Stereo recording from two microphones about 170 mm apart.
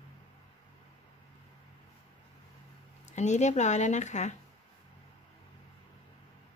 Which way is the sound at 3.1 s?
45° left (ahead or behind).